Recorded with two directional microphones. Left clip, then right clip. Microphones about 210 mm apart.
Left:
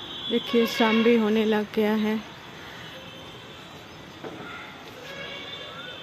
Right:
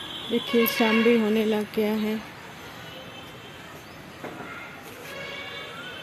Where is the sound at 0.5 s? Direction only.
Centre (ahead or behind).